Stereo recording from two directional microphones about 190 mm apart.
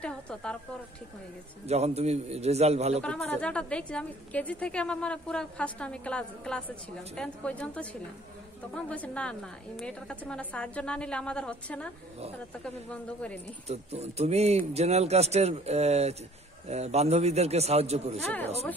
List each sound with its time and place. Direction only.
0.0 s a woman's voice: 5° left (ahead or behind)
1.7 s a man's voice: 35° right (ahead or behind)
3.0 s a woman's voice: 5° left (ahead or behind)
13.7 s a man's voice: 35° right (ahead or behind)
18.2 s speech: 10° left (ahead or behind)